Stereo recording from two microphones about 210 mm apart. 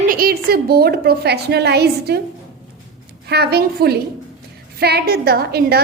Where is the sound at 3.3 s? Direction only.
50° right (ahead or behind).